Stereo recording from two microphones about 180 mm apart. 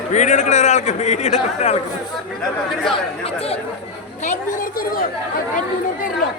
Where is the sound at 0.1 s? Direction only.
40° left (ahead or behind).